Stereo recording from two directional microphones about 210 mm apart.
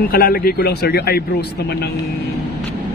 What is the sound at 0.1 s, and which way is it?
Speech, 45° left (ahead or behind).